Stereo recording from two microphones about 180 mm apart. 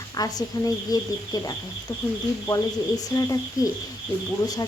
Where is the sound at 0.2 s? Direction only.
20° left (ahead or behind).